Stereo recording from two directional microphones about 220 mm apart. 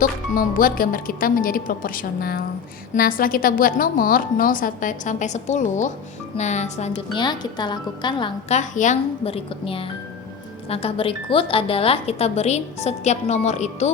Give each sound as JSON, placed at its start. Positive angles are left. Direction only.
{"t": 0.0, "sound": "a woman's voice", "side_deg": 40}
{"t": 7.1, "sound": "speech", "side_deg": 20}